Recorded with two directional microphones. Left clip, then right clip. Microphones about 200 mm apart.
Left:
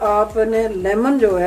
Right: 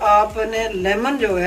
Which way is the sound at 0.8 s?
55° left (ahead or behind).